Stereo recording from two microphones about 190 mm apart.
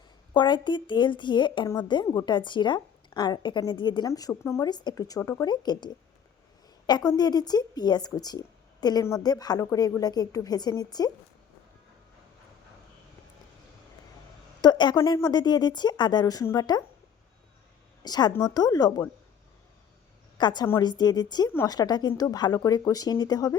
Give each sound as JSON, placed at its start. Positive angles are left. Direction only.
{"t": 0.3, "sound": "a woman's voice", "side_deg": 25}
{"t": 14.6, "sound": "a woman's voice", "side_deg": 20}
{"t": 18.0, "sound": "a woman's voice", "side_deg": 20}
{"t": 20.4, "sound": "a woman's voice", "side_deg": 20}